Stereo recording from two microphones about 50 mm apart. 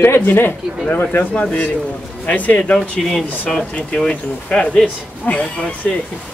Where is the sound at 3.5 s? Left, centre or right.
Left.